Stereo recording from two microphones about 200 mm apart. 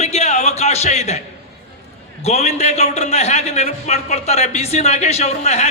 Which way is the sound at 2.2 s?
35° left (ahead or behind).